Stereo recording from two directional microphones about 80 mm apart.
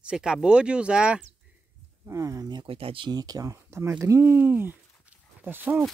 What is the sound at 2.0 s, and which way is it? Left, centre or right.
Speech, right.